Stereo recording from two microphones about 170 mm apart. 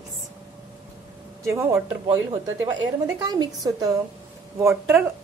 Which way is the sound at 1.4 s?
15° right (ahead or behind).